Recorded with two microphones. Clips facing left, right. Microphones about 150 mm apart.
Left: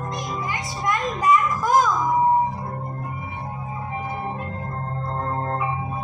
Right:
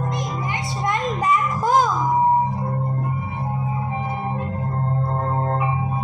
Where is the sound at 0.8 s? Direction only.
25° right (ahead or behind).